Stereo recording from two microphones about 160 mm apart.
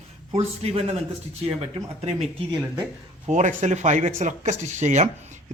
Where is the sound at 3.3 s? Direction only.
50° right (ahead or behind).